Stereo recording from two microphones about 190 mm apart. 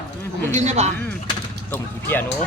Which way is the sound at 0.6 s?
35° right (ahead or behind).